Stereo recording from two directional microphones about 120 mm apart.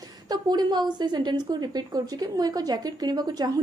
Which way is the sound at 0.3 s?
35° right (ahead or behind).